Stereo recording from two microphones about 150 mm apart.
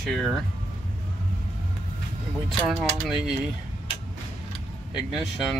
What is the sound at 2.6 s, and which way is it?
Speech, 5° right (ahead or behind).